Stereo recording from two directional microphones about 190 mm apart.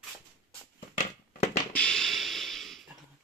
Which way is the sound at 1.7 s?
5° left (ahead or behind).